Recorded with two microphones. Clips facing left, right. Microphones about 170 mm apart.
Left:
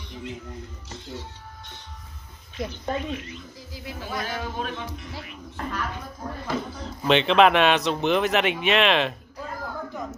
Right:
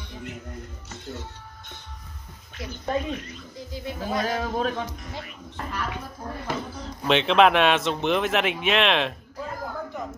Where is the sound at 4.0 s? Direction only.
40° right (ahead or behind).